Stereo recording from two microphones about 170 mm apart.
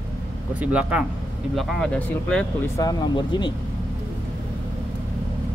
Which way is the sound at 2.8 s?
25° left (ahead or behind).